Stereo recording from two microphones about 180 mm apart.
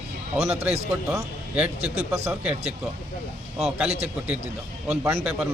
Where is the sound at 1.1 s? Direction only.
10° right (ahead or behind).